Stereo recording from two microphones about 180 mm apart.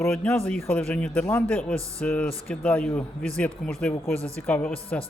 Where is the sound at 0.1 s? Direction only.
5° left (ahead or behind).